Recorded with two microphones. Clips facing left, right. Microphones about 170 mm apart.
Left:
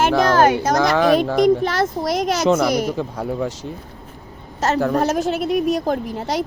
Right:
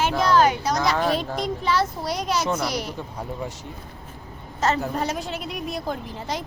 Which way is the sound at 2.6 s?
50° left (ahead or behind).